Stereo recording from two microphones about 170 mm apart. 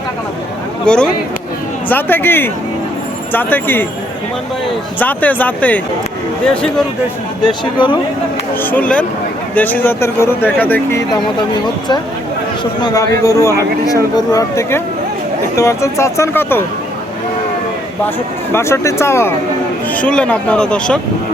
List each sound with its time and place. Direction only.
0.9 s speech: 5° left (ahead or behind)
4.9 s speech: 10° left (ahead or behind)
7.6 s speech: 30° left (ahead or behind)
8.6 s speech: 10° left (ahead or behind)
12.8 s speech: 20° left (ahead or behind)
18.5 s speech: 15° left (ahead or behind)